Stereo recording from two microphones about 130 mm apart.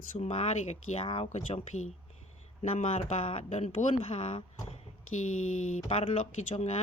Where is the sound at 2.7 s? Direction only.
65° left (ahead or behind).